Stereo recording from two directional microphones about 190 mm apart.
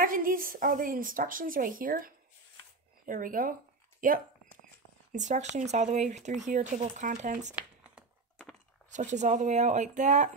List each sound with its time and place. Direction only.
0.0 s a woman's voice: 45° right (ahead or behind)
7.5 s a sound: centre (ahead or behind)
8.9 s speech: 40° right (ahead or behind)